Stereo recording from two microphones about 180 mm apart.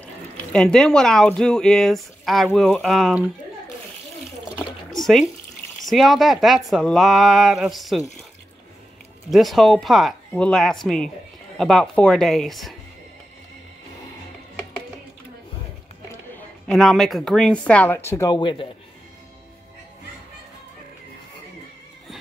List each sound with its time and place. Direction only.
0.0 s speech: 5° left (ahead or behind)
4.6 s a sound: centre (ahead or behind)
5.9 s speech: centre (ahead or behind)
9.3 s speech: centre (ahead or behind)
16.3 s speech: 5° left (ahead or behind)
18.4 s speech: 25° left (ahead or behind)